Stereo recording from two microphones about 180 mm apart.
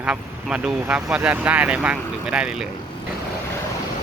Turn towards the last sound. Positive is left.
turn(degrees=-5)  # may be behind; listen again after turning